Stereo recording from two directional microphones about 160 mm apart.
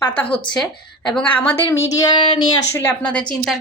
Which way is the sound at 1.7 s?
20° left (ahead or behind).